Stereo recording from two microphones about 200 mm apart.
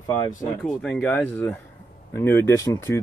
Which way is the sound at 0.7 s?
5° left (ahead or behind).